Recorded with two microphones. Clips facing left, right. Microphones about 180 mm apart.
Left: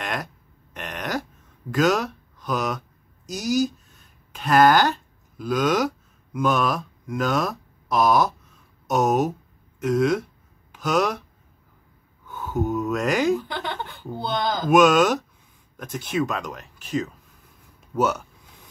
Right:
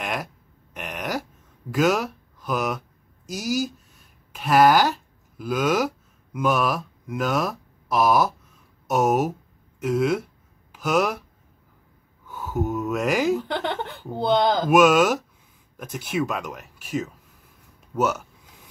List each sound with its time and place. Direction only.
0.0 s a sound: 5° right (ahead or behind)
1.7 s speech: 10° right (ahead or behind)
12.3 s speech: 5° right (ahead or behind)
14.2 s speech: 65° right (ahead or behind)
14.7 s speech: 5° right (ahead or behind)